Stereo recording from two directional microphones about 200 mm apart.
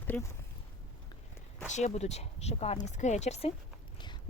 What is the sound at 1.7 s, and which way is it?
Speech, 35° left (ahead or behind).